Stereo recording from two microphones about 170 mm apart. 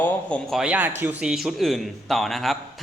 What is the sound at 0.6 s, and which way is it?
A man's voice, 10° right (ahead or behind).